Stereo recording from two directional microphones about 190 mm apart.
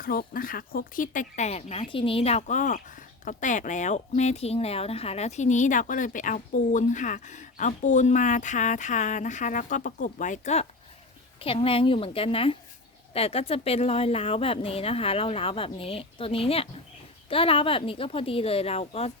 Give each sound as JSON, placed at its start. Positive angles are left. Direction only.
{"t": 0.0, "sound": "a woman's voice", "side_deg": 50}